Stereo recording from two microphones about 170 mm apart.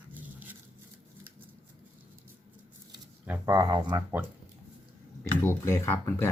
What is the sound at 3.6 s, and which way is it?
Speech, 20° right (ahead or behind).